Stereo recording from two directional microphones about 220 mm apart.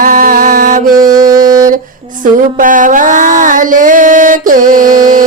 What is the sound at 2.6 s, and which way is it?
Music, 35° right (ahead or behind).